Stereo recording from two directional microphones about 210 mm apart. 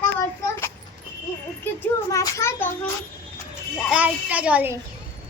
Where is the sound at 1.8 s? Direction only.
15° left (ahead or behind).